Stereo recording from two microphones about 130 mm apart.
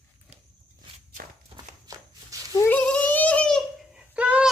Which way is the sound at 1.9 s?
25° right (ahead or behind).